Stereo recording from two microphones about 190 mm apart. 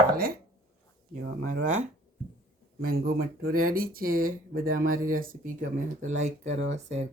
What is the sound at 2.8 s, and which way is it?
Speech, 50° right (ahead or behind).